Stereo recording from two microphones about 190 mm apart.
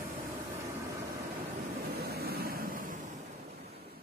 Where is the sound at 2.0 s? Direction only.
55° right (ahead or behind).